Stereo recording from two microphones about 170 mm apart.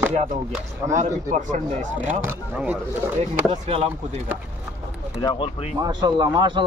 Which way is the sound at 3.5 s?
35° right (ahead or behind).